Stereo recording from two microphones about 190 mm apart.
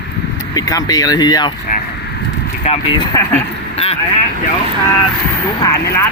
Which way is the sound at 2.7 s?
35° left (ahead or behind).